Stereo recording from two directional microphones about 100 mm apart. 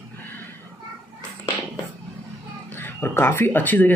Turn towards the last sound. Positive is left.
turn(degrees=20)  # may be behind; listen again after turning